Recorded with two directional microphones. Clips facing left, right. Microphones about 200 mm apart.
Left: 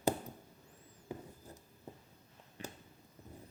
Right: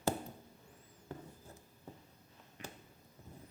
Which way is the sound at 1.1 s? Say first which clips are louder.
Left 3 dB; 10° left (ahead or behind).